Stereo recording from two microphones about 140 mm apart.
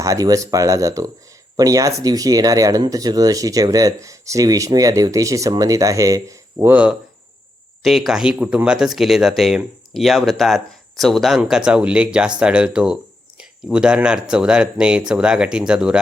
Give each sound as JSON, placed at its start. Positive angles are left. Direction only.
{"t": 0.0, "sound": "speech", "side_deg": -25}
{"t": 7.8, "sound": "speech", "side_deg": 0}